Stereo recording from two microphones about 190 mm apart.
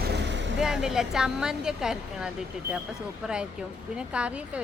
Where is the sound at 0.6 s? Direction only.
Centre (ahead or behind).